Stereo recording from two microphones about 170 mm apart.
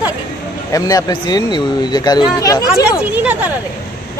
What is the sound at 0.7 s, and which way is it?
Speech, 20° left (ahead or behind).